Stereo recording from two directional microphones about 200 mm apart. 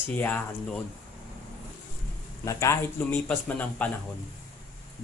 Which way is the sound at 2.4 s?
15° left (ahead or behind).